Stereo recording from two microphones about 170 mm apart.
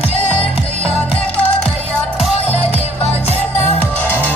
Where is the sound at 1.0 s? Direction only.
10° left (ahead or behind).